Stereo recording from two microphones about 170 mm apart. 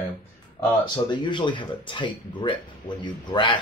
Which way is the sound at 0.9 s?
25° left (ahead or behind).